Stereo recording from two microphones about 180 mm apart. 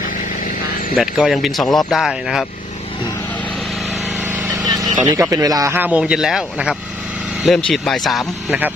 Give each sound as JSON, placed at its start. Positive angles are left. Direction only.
{"t": 0.9, "sound": "speech", "side_deg": 0}
{"t": 4.2, "sound": "vehicle", "side_deg": -10}
{"t": 5.0, "sound": "speech", "side_deg": -20}